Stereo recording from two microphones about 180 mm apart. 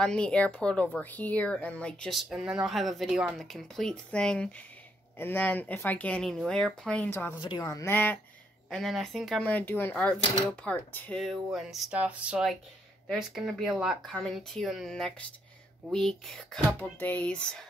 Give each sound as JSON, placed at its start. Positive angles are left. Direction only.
{"t": 0.0, "sound": "speech", "side_deg": 5}
{"t": 7.3, "sound": "speech", "side_deg": 25}